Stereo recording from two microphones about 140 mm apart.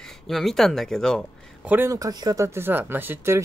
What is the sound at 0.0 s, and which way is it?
Speech, centre (ahead or behind).